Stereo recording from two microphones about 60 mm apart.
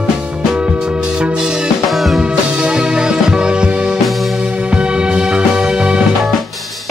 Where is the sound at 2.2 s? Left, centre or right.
Centre.